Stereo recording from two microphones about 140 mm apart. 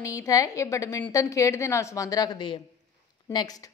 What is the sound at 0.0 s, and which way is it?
A woman's voice, 25° left (ahead or behind).